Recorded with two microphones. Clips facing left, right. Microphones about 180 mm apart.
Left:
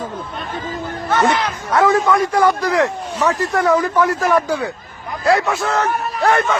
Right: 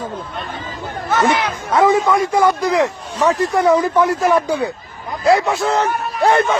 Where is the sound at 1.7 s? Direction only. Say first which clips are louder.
Right 1 dB; 20° right (ahead or behind).